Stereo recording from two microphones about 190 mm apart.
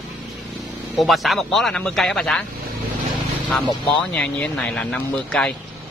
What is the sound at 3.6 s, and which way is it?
Speech, 25° left (ahead or behind).